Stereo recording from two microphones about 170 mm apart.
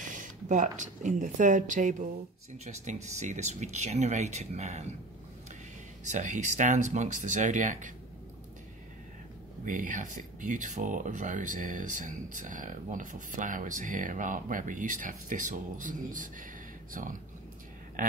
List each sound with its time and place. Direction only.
0.0 s speech: 50° right (ahead or behind)
6.0 s speech: 45° right (ahead or behind)
9.7 s speech: 50° right (ahead or behind)